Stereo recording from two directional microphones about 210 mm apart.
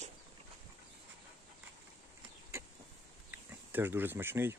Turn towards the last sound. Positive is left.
turn(degrees=-10)  # may be behind; listen again after turning